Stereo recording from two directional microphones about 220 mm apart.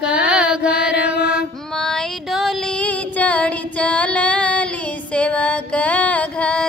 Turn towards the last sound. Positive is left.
turn(degrees=5)  # may be behind; listen again after turning